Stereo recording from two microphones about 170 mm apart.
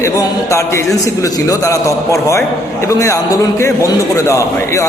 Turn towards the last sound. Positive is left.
turn(degrees=20)  # may be behind; listen again after turning